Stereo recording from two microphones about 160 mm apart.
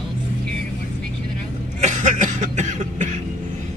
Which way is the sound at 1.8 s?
50° right (ahead or behind).